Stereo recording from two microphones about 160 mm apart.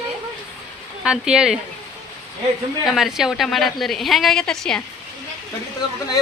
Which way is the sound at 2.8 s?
Centre (ahead or behind).